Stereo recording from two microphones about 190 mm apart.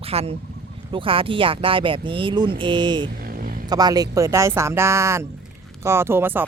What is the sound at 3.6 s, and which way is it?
Speech, 20° right (ahead or behind).